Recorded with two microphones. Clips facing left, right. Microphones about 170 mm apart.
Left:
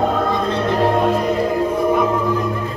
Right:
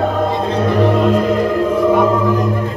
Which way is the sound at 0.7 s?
85° right.